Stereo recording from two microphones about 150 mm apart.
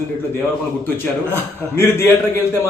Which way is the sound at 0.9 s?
15° left (ahead or behind).